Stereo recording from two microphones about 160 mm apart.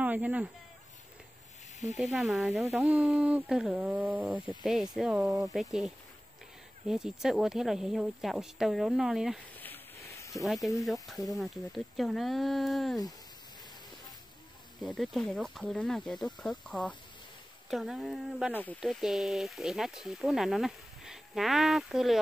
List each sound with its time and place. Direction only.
0.0 s speech: 10° right (ahead or behind)
2.0 s speech: centre (ahead or behind)
6.9 s speech: 5° right (ahead or behind)
9.6 s a sound: 15° left (ahead or behind)
10.4 s speech: centre (ahead or behind)
14.8 s speech: centre (ahead or behind)
18.5 s speech: 10° left (ahead or behind)
18.8 s speech: centre (ahead or behind)